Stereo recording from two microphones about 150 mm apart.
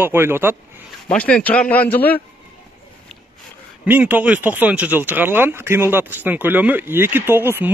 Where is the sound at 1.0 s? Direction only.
10° left (ahead or behind).